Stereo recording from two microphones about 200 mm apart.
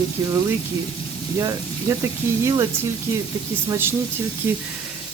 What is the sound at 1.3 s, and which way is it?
Speech, 15° right (ahead or behind).